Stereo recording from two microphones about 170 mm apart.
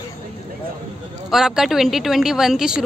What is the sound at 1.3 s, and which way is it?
A woman's voice, centre (ahead or behind).